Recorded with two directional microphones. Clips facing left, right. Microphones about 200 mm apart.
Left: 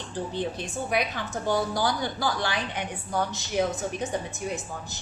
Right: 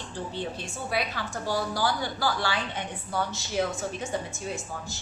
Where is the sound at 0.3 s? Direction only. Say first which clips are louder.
Left 3 dB; 15° left (ahead or behind).